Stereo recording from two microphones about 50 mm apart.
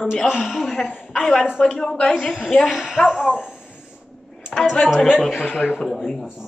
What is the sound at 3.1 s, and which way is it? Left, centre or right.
Speech, left.